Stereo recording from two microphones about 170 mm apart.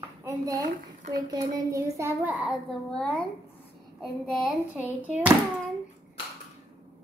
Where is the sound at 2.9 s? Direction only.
5° left (ahead or behind).